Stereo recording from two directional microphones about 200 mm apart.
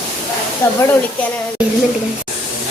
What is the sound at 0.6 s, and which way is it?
Speech, 10° left (ahead or behind).